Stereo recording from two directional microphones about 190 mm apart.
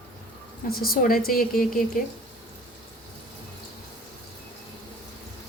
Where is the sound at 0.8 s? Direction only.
50° left (ahead or behind).